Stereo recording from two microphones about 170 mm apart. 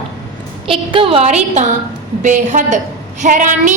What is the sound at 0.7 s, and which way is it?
A woman's voice, 30° right (ahead or behind).